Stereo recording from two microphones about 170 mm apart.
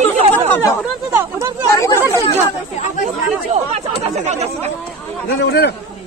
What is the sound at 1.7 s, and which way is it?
Chatter, 15° left (ahead or behind).